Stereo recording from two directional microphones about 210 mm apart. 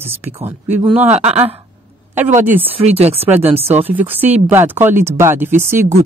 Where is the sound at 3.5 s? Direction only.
30° right (ahead or behind).